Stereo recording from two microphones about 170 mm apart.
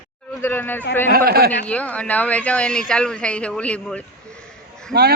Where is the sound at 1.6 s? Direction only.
10° left (ahead or behind).